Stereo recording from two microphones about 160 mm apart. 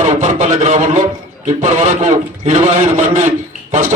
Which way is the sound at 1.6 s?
50° right (ahead or behind).